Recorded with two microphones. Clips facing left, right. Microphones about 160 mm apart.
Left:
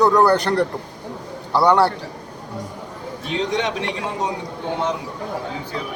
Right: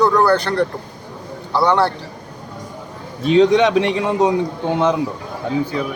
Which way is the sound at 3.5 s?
90° right.